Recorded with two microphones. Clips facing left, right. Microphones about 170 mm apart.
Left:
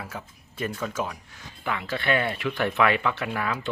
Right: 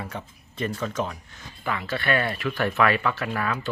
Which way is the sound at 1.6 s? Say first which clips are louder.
Right 1 dB; 15° left (ahead or behind).